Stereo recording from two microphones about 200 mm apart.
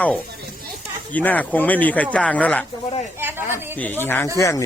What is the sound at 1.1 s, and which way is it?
Speech, 10° left (ahead or behind).